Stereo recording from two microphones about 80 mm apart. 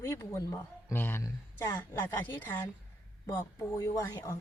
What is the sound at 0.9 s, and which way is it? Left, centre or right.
A woman's voice, left.